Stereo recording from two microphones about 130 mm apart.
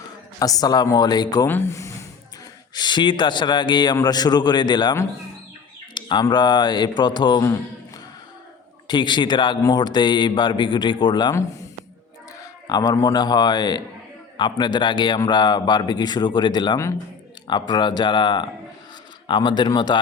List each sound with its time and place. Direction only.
0.3 s speech: 25° left (ahead or behind)
1.5 s speech: 15° left (ahead or behind)
2.7 s speech: 35° left (ahead or behind)
8.9 s speech: 35° left (ahead or behind)
12.4 s speech: 30° left (ahead or behind)